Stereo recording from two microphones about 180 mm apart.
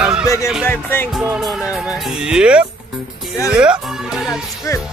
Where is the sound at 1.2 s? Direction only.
5° right (ahead or behind).